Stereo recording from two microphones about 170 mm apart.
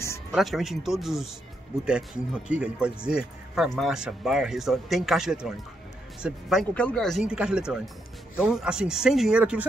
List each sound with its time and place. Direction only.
0.3 s speech: centre (ahead or behind)
6.7 s speech: 5° left (ahead or behind)